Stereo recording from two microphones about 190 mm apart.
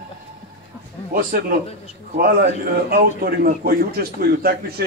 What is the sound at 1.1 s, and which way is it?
A man's voice, 50° right (ahead or behind).